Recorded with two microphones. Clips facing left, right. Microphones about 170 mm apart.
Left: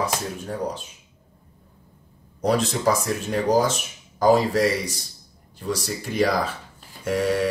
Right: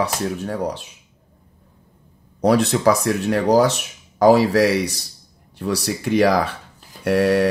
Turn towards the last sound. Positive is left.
turn(degrees=-65)  # may be behind; listen again after turning